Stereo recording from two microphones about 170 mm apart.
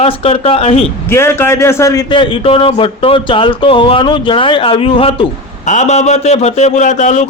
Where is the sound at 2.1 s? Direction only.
30° left (ahead or behind).